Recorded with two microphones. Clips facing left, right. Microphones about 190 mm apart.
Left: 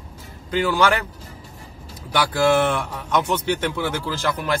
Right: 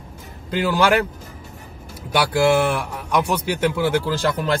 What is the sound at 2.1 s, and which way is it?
A man's voice, 15° right (ahead or behind).